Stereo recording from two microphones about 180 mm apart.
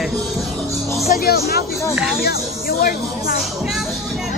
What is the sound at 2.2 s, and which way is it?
Speech, 55° left (ahead or behind).